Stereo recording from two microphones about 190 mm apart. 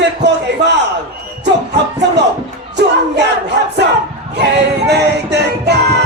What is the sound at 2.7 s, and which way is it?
Battle cry, 65° right (ahead or behind).